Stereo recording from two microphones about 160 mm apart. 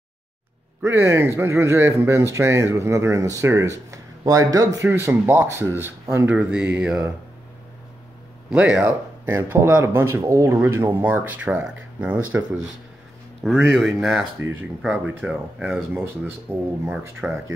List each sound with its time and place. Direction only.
0.8 s speech: 15° right (ahead or behind)
8.5 s speech: 5° right (ahead or behind)